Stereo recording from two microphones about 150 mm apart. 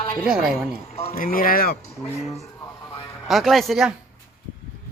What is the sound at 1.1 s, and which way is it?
Speech, 70° left (ahead or behind).